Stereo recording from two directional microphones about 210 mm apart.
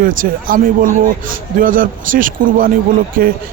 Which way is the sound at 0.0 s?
40° right (ahead or behind).